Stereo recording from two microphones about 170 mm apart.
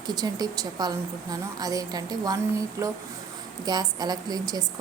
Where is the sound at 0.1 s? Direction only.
25° right (ahead or behind).